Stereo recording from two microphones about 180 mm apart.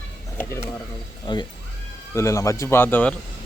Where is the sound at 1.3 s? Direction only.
25° left (ahead or behind).